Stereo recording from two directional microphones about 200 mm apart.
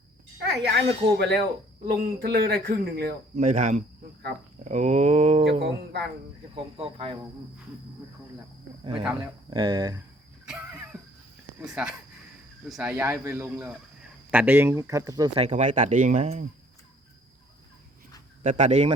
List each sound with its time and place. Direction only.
0.5 s speech: 55° right (ahead or behind)
3.3 s speech: 40° right (ahead or behind)
5.5 s speech: 60° right (ahead or behind)
6.5 s speech: 25° right (ahead or behind)
8.8 s speech: 25° right (ahead or behind)
10.9 s a sound: 5° right (ahead or behind)
11.6 s speech: 5° right (ahead or behind)
15.4 s speech: 35° right (ahead or behind)
18.4 s speech: 35° right (ahead or behind)